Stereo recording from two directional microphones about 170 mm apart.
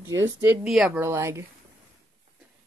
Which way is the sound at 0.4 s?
5° right (ahead or behind).